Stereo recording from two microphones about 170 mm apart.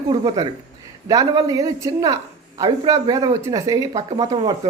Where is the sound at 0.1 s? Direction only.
25° right (ahead or behind).